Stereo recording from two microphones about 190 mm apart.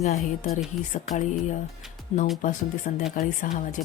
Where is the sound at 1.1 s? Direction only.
40° left (ahead or behind).